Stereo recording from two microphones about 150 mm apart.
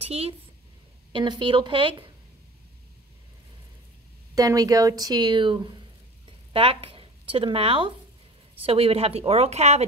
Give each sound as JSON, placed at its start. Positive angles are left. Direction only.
{"t": 0.0, "sound": "a woman's voice", "side_deg": -40}
{"t": 4.4, "sound": "speech", "side_deg": -25}